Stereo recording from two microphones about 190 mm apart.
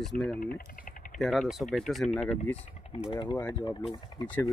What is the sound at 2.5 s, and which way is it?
Speech, 35° left (ahead or behind).